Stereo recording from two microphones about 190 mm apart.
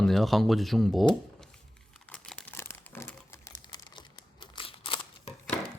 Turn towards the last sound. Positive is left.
turn(degrees=30)  # may be behind; listen again after turning